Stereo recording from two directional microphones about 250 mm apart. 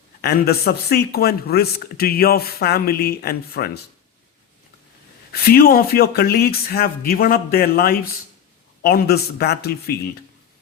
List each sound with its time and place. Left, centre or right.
0.2 s speech: left
5.3 s speech: left